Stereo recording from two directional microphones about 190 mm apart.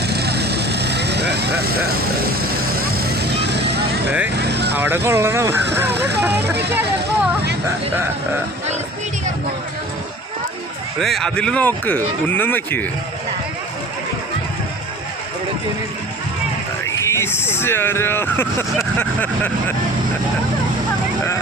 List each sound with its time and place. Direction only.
0.1 s vehicle: 60° right (ahead or behind)
4.4 s speech: 60° right (ahead or behind)
4.7 s speech: 10° right (ahead or behind)
6.3 s speech: 60° right (ahead or behind)
11.0 s speech: centre (ahead or behind)
16.8 s speech: 15° left (ahead or behind)